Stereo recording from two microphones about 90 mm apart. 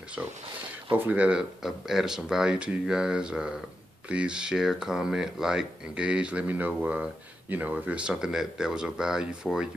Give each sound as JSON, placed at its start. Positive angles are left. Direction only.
{"t": 0.9, "sound": "speech", "side_deg": -20}
{"t": 1.6, "sound": "speech", "side_deg": -5}